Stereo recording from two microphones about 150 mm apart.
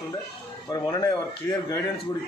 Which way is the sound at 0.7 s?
25° left (ahead or behind).